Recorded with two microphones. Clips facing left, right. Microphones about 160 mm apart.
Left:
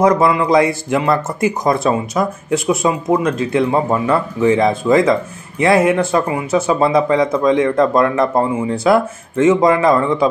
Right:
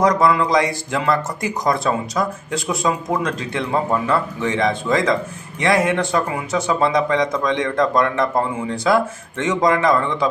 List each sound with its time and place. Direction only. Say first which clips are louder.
0.0 s speech: left 3 dB; 25° left (ahead or behind)